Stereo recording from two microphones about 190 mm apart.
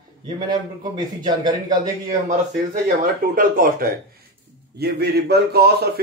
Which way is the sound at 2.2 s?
45° right (ahead or behind).